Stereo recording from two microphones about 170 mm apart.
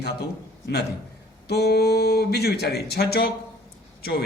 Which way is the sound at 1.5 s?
70° left (ahead or behind).